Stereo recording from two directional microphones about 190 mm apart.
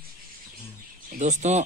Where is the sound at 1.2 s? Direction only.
40° right (ahead or behind).